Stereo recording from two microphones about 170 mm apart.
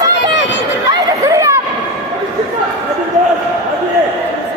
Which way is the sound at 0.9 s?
20° right (ahead or behind).